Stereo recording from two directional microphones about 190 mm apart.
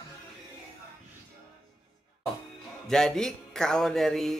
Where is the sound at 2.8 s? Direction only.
5° left (ahead or behind).